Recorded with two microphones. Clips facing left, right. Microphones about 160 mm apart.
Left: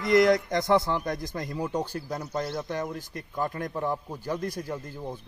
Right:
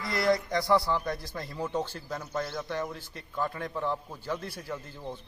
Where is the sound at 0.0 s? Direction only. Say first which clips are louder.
Left 6 dB; 20° left (ahead or behind).